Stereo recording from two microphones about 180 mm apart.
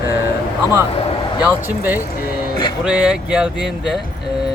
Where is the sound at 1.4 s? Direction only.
10° right (ahead or behind).